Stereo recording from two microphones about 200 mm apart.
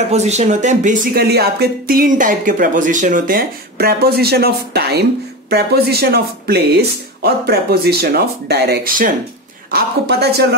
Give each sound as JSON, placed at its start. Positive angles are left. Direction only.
{"t": 0.1, "sound": "speech", "side_deg": -35}
{"t": 1.2, "sound": "speech", "side_deg": -55}